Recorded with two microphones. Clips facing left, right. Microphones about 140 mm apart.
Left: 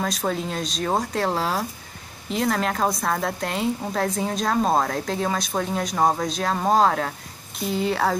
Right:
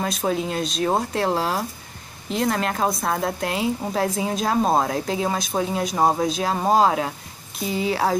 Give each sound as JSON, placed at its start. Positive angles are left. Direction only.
{"t": 0.0, "sound": "a woman's voice", "side_deg": -5}